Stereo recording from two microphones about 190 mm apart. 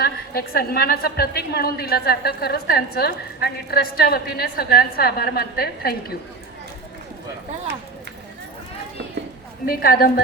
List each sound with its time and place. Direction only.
0.0 s a woman's voice: 55° left (ahead or behind)
9.6 s a woman's voice: 50° left (ahead or behind)